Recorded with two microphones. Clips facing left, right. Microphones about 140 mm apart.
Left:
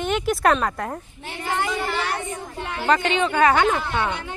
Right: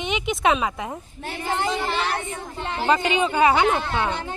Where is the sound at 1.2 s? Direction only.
40° right (ahead or behind).